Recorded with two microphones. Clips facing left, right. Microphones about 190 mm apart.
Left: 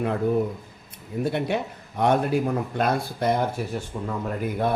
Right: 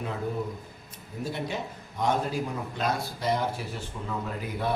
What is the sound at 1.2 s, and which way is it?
A man's voice, 60° left (ahead or behind).